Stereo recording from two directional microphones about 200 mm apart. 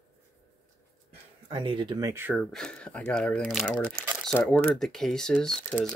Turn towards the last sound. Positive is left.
turn(degrees=5)  # may be behind; listen again after turning